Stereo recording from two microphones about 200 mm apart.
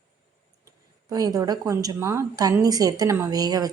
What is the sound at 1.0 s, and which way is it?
A woman's voice, 20° right (ahead or behind).